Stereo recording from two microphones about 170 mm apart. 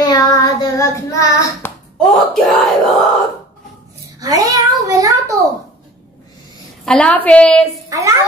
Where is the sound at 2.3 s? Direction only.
Centre (ahead or behind).